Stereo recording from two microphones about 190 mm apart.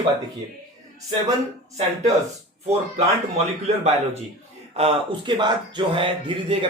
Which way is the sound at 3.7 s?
35° right (ahead or behind).